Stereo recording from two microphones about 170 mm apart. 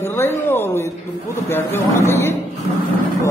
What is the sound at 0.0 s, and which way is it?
A man's voice, 15° left (ahead or behind).